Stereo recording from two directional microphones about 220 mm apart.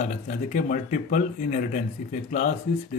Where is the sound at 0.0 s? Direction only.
35° left (ahead or behind).